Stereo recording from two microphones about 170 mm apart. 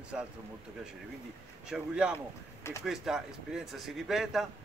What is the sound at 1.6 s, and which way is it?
Speech, 5° right (ahead or behind).